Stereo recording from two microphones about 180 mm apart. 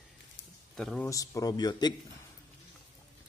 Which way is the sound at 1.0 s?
20° left (ahead or behind).